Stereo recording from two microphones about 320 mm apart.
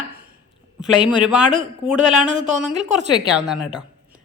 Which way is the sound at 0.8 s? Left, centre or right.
Centre.